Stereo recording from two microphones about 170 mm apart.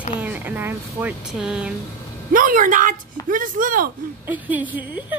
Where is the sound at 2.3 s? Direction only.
55° right (ahead or behind).